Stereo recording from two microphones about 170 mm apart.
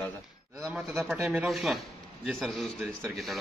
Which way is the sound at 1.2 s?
10° right (ahead or behind).